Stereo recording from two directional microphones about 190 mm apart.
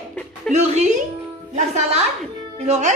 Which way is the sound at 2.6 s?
35° right (ahead or behind).